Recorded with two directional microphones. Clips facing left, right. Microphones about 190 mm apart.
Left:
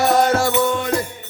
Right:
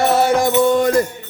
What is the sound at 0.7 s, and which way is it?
Mantra, 45° right (ahead or behind).